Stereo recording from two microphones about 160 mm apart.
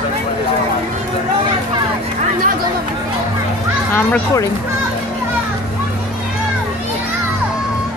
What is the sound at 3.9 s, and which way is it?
Speech, 15° left (ahead or behind).